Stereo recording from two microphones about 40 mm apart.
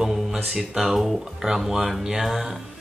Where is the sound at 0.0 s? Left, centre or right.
Centre.